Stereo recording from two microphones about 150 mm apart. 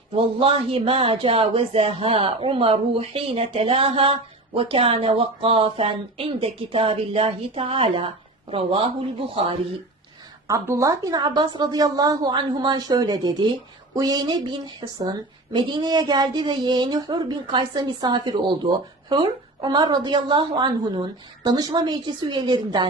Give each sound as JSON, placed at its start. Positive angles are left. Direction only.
{"t": 0.2, "sound": "speech", "side_deg": -40}
{"t": 10.5, "sound": "a woman's voice", "side_deg": -20}